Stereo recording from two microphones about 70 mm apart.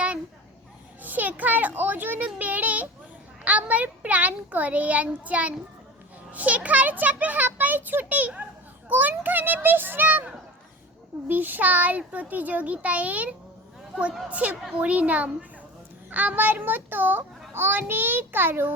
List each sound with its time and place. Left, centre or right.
1.0 s a child's voice: right
11.3 s a child's voice: right